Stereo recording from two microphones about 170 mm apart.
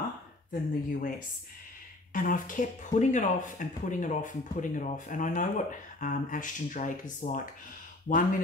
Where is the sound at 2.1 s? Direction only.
50° left (ahead or behind).